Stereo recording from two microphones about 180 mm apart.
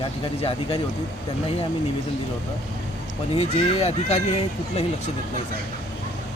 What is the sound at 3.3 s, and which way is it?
Speech, 35° left (ahead or behind).